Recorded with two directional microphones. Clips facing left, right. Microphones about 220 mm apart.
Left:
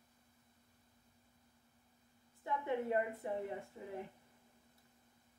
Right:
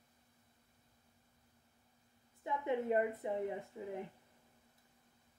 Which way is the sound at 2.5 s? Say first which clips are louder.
Right 2 dB; 20° right (ahead or behind).